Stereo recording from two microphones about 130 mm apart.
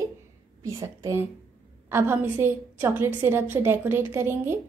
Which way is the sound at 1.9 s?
15° right (ahead or behind).